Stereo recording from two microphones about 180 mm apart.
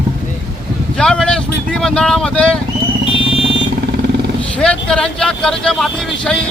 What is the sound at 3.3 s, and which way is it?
Vehicle, 30° left (ahead or behind).